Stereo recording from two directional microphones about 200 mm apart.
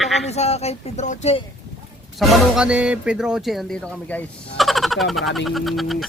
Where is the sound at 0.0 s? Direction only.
Centre (ahead or behind).